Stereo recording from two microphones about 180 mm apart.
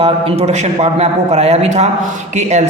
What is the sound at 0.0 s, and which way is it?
A man's voice, 35° right (ahead or behind).